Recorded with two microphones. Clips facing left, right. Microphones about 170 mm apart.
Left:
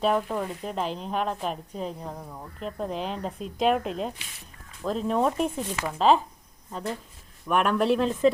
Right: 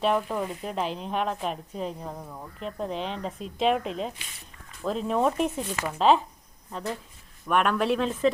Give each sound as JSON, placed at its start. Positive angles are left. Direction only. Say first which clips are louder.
{"t": 0.0, "sound": "speech", "louder": "even", "side_deg": 0}
{"t": 7.4, "sound": "speech", "louder": "left 1 dB", "side_deg": 0}